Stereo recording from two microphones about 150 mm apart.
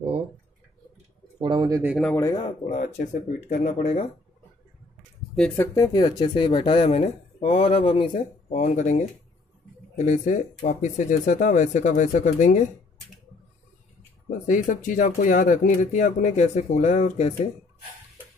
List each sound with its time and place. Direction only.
1.4 s speech: 30° right (ahead or behind)
2.1 s speech: 20° left (ahead or behind)
2.6 s speech: 55° left (ahead or behind)
3.6 s speech: 45° left (ahead or behind)
5.3 s speech: 5° left (ahead or behind)
5.8 s speech: 30° left (ahead or behind); by 12.6 s 55° left (ahead or behind)
14.5 s speech: 60° left (ahead or behind)